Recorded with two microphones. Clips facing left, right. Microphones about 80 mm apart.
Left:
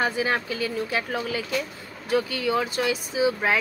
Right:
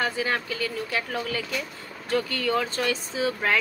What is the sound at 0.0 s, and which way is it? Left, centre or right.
Speech, left.